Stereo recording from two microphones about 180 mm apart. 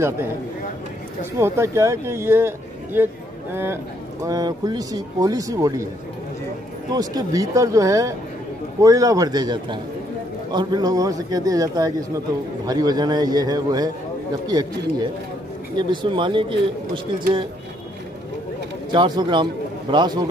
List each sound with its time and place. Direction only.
1.4 s speech: 15° right (ahead or behind)
6.9 s speech: 20° right (ahead or behind)
18.9 s a man's voice: 25° right (ahead or behind)